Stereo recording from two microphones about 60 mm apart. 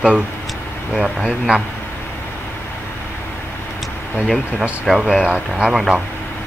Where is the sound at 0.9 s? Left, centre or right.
Centre.